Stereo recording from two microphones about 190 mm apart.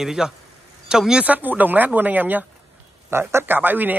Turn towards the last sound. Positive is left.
turn(degrees=-10)  # may be behind; listen again after turning